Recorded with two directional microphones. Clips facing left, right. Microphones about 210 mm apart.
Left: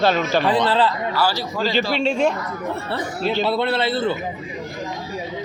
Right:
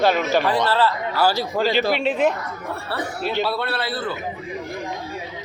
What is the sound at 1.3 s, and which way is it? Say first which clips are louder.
Speech: right 1 dB; 55° right (ahead or behind).